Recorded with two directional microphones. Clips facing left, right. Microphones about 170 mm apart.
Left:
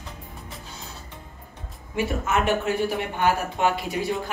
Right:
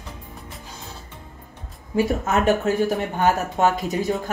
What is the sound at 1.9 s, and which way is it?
Speech, 40° right (ahead or behind).